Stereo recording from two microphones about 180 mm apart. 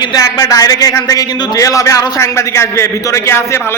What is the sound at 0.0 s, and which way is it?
Speech, 20° left (ahead or behind).